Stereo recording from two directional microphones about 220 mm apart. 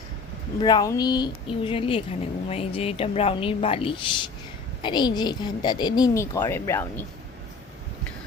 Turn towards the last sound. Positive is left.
turn(degrees=10)  # may be behind; listen again after turning